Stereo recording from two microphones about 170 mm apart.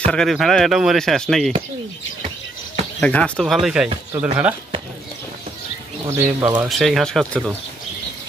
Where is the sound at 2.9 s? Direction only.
5° left (ahead or behind).